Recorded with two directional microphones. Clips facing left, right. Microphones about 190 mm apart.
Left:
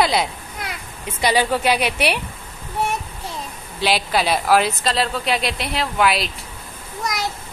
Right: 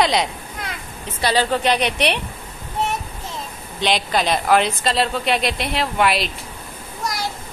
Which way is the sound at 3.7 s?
5° left (ahead or behind).